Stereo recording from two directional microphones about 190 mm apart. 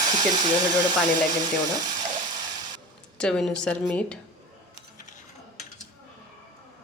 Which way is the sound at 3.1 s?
5° left (ahead or behind).